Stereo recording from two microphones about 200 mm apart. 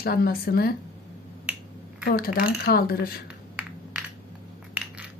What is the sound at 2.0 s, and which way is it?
A woman's voice, 50° left (ahead or behind).